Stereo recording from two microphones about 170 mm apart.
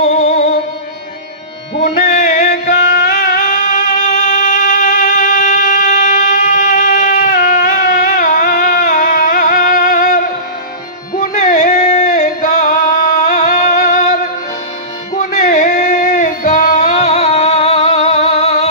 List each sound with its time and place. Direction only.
0.0 s music: 40° left (ahead or behind)
2.0 s music: 45° left (ahead or behind)